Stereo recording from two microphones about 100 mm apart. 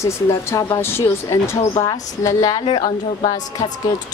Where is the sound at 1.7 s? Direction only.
50° left (ahead or behind).